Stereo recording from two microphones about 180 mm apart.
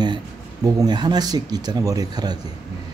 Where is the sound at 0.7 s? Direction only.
20° right (ahead or behind).